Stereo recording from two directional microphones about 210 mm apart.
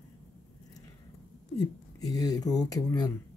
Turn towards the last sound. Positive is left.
turn(degrees=20)  # may be behind; listen again after turning